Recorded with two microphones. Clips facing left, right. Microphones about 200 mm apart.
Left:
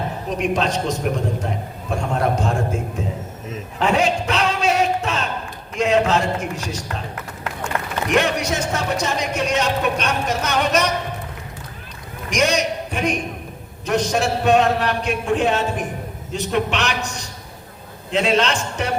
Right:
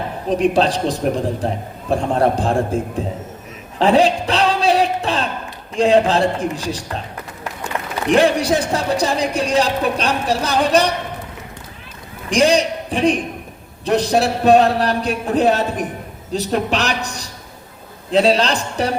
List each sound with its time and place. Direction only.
0.3 s speech: 35° right (ahead or behind)
3.8 s a sound: 35° right (ahead or behind)
5.7 s speech: 30° right (ahead or behind)
8.1 s speech: 30° right (ahead or behind)
12.3 s a sound: 30° right (ahead or behind)
13.8 s speech: 35° right (ahead or behind)